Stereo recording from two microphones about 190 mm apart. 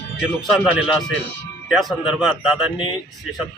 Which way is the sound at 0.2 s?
5° right (ahead or behind).